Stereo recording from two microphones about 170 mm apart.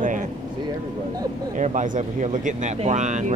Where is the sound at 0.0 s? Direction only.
50° right (ahead or behind).